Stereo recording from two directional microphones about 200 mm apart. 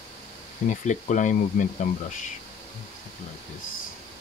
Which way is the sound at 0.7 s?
40° left (ahead or behind).